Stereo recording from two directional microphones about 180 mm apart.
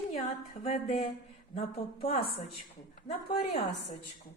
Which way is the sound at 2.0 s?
55° left (ahead or behind).